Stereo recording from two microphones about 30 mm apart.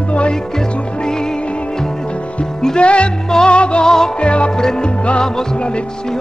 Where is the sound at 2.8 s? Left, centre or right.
Left.